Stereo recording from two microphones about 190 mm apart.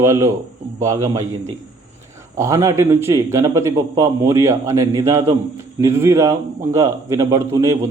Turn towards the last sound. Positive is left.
turn(degrees=-15)  # may be behind; listen again after turning